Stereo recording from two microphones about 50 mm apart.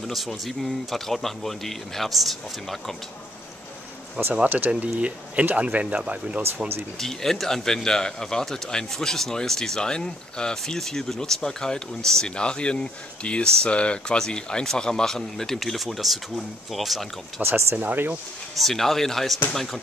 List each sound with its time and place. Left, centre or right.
0.1 s speech: centre
4.2 s speech: right
7.0 s a man's voice: centre
17.4 s speech: right
17.7 s speech: right
18.6 s speech: centre